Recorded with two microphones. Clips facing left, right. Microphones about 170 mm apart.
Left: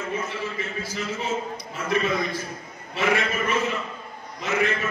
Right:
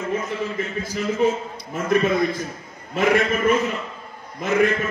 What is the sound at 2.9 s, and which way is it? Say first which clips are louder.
A man's voice: right 5 dB; 50° right (ahead or behind).